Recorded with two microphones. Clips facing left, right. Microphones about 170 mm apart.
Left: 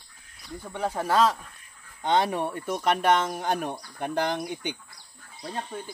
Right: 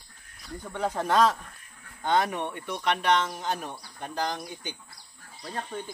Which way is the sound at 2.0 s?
30° left (ahead or behind).